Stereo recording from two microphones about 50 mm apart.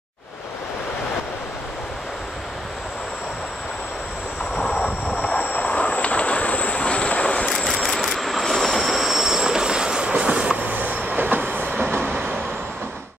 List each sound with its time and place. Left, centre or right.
5.4 s vehicle: left; by 10.6 s centre
10.6 s train: right